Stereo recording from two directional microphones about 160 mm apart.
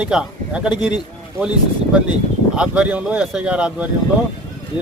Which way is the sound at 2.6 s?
5° right (ahead or behind).